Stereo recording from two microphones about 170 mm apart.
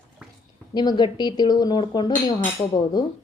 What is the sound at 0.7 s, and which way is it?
A woman's voice, 25° left (ahead or behind).